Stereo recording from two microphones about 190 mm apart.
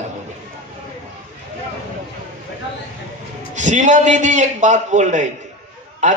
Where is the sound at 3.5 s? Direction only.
40° right (ahead or behind).